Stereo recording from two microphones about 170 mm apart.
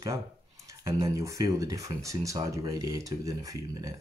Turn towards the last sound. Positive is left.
turn(degrees=-20)  # may be behind; listen again after turning